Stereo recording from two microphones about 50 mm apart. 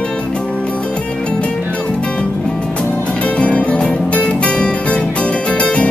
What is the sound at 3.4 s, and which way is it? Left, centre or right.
Music, left.